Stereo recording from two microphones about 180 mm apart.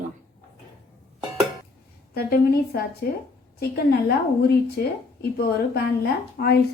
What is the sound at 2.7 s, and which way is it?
Speech, 65° left (ahead or behind).